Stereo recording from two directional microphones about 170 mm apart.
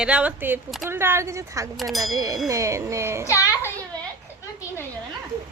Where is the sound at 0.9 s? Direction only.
15° right (ahead or behind).